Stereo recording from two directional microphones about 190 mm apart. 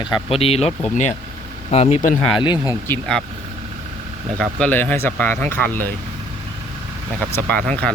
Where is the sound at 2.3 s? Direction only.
25° left (ahead or behind).